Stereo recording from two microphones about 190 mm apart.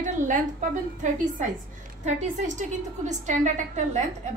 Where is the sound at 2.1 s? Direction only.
35° right (ahead or behind).